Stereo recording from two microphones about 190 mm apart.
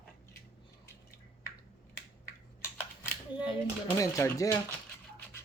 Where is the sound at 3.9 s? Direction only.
15° left (ahead or behind).